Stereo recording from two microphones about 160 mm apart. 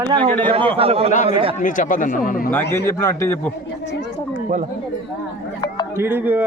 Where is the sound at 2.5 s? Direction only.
15° left (ahead or behind).